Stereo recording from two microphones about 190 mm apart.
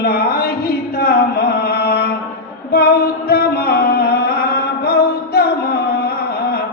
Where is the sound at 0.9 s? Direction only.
55° left (ahead or behind).